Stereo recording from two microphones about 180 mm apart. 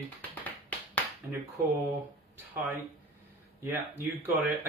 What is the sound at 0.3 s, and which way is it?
Music, 10° left (ahead or behind).